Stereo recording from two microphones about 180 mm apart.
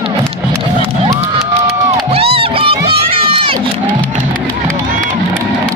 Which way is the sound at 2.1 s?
30° right (ahead or behind).